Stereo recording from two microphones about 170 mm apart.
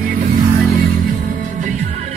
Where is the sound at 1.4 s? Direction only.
45° right (ahead or behind).